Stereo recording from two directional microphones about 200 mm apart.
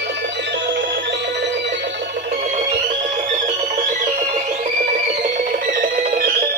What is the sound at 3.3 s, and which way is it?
Music, 40° right (ahead or behind).